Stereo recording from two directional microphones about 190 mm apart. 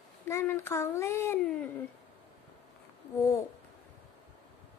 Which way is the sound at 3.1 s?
15° left (ahead or behind).